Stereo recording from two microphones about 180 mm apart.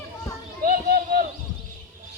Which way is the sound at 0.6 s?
50° right (ahead or behind).